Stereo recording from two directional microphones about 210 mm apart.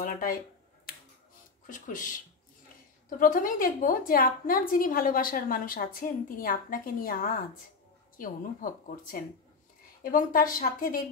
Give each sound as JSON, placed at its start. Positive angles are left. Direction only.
{"t": 0.0, "sound": "a woman's voice", "side_deg": 40}
{"t": 1.7, "sound": "a woman's voice", "side_deg": 40}
{"t": 3.1, "sound": "a woman's voice", "side_deg": 40}